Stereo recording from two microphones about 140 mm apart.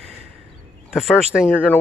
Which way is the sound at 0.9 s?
Centre (ahead or behind).